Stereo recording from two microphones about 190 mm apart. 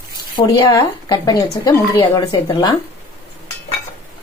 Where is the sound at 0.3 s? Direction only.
20° left (ahead or behind).